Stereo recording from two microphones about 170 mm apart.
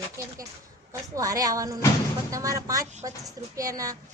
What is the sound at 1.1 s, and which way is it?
A woman's voice, 20° right (ahead or behind).